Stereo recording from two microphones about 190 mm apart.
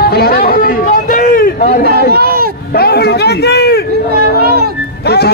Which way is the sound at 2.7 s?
55° left (ahead or behind).